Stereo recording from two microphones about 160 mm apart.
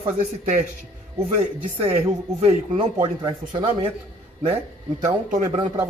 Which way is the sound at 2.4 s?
40° right (ahead or behind).